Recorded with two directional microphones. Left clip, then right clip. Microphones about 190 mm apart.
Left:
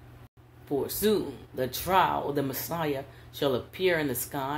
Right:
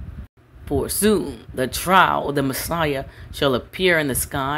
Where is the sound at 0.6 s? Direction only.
40° right (ahead or behind).